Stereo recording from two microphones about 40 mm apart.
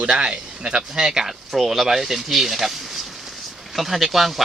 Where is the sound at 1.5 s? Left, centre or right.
Centre.